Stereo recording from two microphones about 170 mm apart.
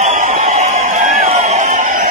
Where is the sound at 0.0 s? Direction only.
45° right (ahead or behind).